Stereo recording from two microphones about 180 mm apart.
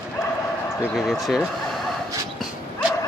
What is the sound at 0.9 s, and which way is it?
Speech, centre (ahead or behind).